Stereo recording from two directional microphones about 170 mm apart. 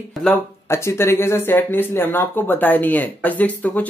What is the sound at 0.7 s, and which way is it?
Speech, 15° left (ahead or behind).